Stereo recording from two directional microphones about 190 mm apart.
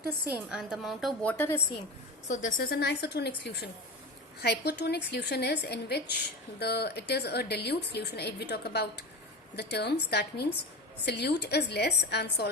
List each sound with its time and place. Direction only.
0.5 s a woman's voice: centre (ahead or behind)
2.2 s a woman's voice: 40° left (ahead or behind); by 12.5 s 60° left (ahead or behind)